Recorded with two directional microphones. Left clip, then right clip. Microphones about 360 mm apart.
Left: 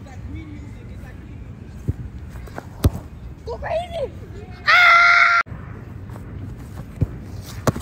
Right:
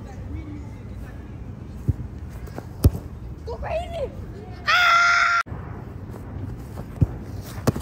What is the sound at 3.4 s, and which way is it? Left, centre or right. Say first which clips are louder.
Speech: left 4 dB; left.